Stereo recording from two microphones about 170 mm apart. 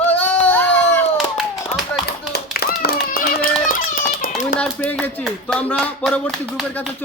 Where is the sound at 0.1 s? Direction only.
10° left (ahead or behind).